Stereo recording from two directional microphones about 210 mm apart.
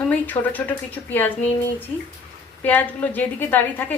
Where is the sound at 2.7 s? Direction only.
10° left (ahead or behind).